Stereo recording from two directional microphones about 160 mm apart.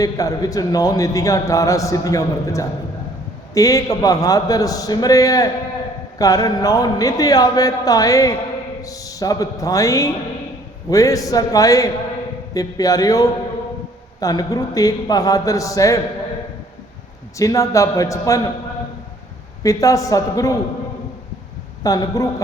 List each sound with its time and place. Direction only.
0.0 s a man's voice: 20° left (ahead or behind)
17.3 s a man's voice: 20° left (ahead or behind)
19.6 s a man's voice: 20° left (ahead or behind)
21.8 s a man's voice: 20° left (ahead or behind)